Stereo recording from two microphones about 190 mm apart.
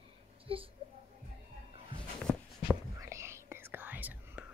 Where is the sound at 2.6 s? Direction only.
15° right (ahead or behind).